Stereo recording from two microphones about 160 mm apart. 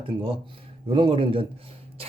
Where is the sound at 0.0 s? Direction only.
35° right (ahead or behind).